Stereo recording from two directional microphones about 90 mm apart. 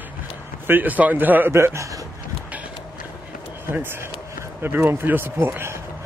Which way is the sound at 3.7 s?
25° right (ahead or behind).